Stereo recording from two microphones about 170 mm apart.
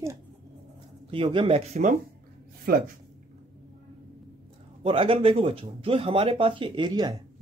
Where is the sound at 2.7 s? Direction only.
65° right (ahead or behind).